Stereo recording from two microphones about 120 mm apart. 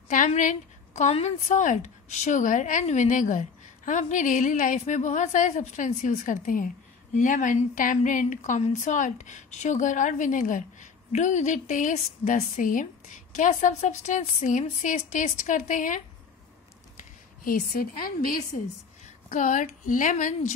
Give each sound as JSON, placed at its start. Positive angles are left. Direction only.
{"t": 0.1, "sound": "a woman's voice", "side_deg": 90}
{"t": 1.1, "sound": "speech", "side_deg": 80}
{"t": 19.2, "sound": "speech", "side_deg": 90}